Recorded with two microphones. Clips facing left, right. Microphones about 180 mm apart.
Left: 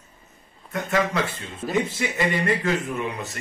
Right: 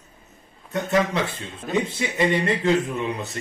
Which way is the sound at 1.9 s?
20° right (ahead or behind).